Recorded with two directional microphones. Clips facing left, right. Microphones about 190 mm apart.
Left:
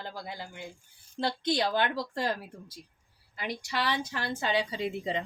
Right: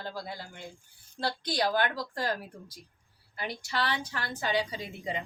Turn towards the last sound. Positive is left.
turn(degrees=30)  # may be behind; listen again after turning